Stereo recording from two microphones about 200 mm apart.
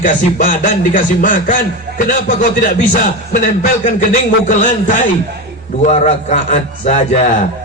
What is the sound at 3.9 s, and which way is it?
A man's voice, 40° left (ahead or behind).